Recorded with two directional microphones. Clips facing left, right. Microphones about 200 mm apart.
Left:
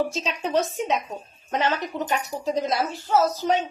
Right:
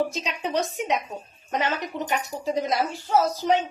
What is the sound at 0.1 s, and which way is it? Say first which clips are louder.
Speech: left 3 dB; 20° right (ahead or behind).